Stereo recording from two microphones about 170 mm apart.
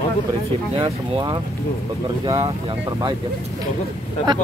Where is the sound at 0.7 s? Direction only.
30° right (ahead or behind).